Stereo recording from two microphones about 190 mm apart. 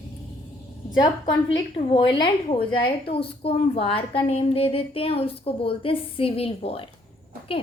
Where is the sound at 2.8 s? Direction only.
30° left (ahead or behind).